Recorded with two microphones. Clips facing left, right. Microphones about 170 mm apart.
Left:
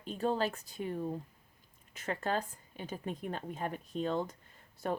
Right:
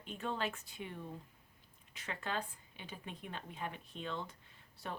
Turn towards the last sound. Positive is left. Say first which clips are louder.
# left 9 dB
turn(degrees=45)  # may be behind; listen again after turning